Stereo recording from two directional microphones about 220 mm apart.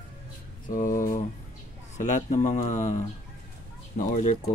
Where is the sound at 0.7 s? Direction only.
40° left (ahead or behind).